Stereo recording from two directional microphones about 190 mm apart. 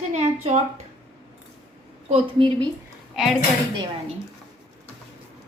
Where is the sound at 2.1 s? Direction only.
30° right (ahead or behind).